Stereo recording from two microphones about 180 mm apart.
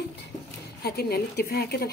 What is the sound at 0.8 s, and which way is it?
Speech, 60° left (ahead or behind).